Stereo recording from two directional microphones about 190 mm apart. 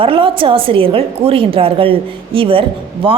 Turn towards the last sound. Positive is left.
turn(degrees=-30)  # may be behind; listen again after turning